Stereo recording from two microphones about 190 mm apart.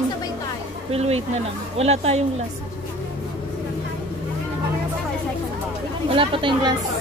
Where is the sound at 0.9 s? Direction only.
35° right (ahead or behind).